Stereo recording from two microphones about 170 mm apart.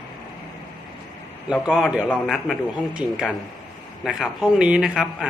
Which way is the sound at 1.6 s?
5° right (ahead or behind).